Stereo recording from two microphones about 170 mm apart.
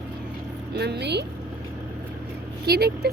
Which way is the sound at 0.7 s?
75° right (ahead or behind).